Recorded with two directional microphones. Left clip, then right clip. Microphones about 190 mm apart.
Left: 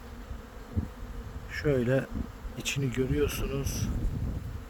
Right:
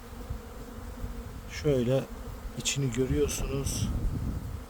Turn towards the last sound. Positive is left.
turn(degrees=-5)  # may be behind; listen again after turning